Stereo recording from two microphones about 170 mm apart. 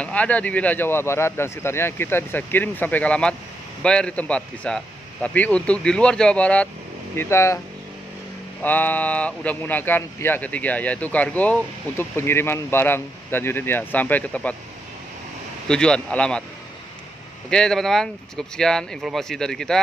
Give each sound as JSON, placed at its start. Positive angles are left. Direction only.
{"t": 0.0, "sound": "speech", "side_deg": 10}
{"t": 8.6, "sound": "speech", "side_deg": 10}
{"t": 15.7, "sound": "speech", "side_deg": 5}
{"t": 17.5, "sound": "speech", "side_deg": 5}